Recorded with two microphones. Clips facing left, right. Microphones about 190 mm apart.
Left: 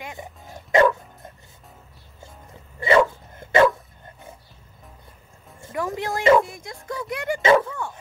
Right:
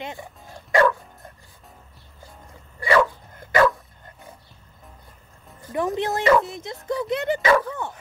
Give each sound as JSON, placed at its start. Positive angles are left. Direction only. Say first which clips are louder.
{"t": 0.2, "sound": "dog", "louder": "left 1 dB", "side_deg": 20}
{"t": 2.8, "sound": "dog", "louder": "left 2 dB", "side_deg": 25}
{"t": 5.7, "sound": "speech", "louder": "right 3 dB", "side_deg": -20}
{"t": 7.4, "sound": "speech", "louder": "left 3 dB", "side_deg": 25}